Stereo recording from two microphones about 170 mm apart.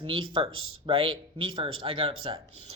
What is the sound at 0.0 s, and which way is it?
Speech, 30° right (ahead or behind).